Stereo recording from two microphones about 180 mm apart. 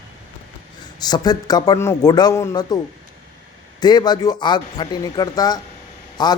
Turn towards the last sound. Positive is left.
turn(degrees=25)  # may be behind; listen again after turning